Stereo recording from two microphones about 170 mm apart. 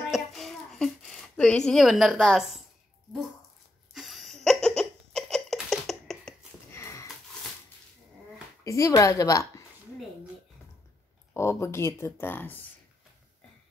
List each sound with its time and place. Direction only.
0.1 s a sound: centre (ahead or behind)
1.7 s a woman's voice: centre (ahead or behind)
3.9 s a sound: centre (ahead or behind)
6.7 s sniff: 15° left (ahead or behind)
8.6 s a woman's voice: 20° left (ahead or behind)
11.3 s speech: 15° left (ahead or behind)